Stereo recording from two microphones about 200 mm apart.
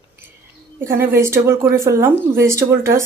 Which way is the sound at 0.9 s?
15° right (ahead or behind).